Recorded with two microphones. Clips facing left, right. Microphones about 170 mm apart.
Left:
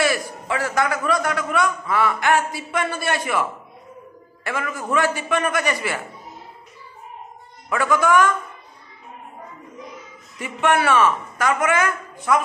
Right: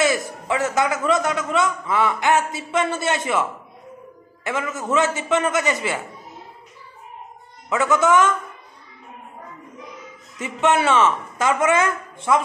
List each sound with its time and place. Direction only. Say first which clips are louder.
0.0 s a man's voice: right 1 dB; 20° right (ahead or behind)
4.5 s a man's voice: right 1 dB; 20° right (ahead or behind)
7.7 s a man's voice: right 1 dB; 20° right (ahead or behind)
10.4 s a man's voice: right 1 dB; 20° right (ahead or behind)